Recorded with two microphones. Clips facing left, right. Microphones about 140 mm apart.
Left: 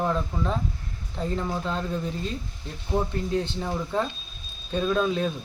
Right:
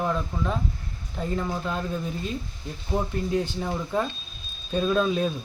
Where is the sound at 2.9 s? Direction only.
10° right (ahead or behind).